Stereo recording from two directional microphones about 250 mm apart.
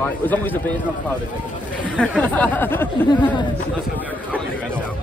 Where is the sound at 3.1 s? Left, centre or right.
Centre.